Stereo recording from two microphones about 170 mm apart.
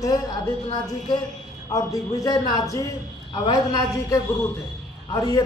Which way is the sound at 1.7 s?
20° left (ahead or behind).